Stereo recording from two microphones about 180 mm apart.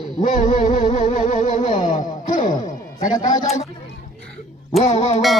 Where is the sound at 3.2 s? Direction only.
20° left (ahead or behind).